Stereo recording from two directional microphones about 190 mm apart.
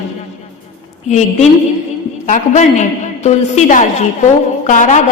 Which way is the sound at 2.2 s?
40° left (ahead or behind).